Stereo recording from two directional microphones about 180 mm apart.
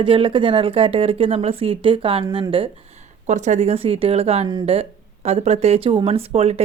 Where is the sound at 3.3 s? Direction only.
40° right (ahead or behind).